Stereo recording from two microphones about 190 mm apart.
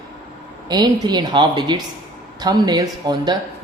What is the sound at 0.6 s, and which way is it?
Speech, 20° right (ahead or behind).